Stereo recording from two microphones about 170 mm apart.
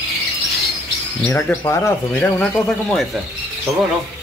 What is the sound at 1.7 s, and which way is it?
Speech, 15° left (ahead or behind).